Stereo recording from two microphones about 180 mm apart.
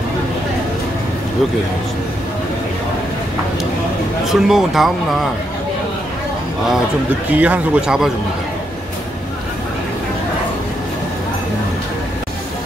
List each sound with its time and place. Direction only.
4.3 s speech: centre (ahead or behind)
7.2 s a man's voice: 10° right (ahead or behind)